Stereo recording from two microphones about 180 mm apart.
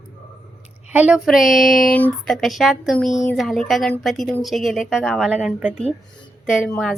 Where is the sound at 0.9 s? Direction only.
5° right (ahead or behind).